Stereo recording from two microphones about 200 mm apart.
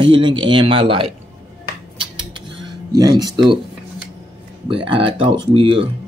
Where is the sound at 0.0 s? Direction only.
25° right (ahead or behind).